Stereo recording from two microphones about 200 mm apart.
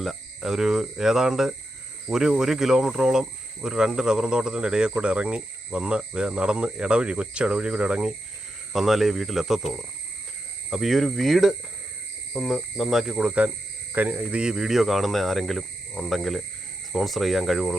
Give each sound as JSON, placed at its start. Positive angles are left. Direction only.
{"t": 0.0, "sound": "speech", "side_deg": 0}
{"t": 10.7, "sound": "speech", "side_deg": 0}